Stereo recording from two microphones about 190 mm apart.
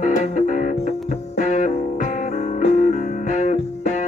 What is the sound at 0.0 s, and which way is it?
Music, 40° left (ahead or behind).